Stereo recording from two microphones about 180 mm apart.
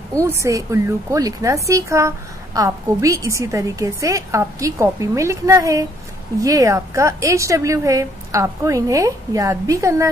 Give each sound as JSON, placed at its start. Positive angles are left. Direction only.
{"t": 0.1, "sound": "a woman's voice", "side_deg": -15}